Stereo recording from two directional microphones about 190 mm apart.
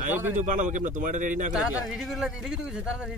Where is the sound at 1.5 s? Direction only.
Centre (ahead or behind).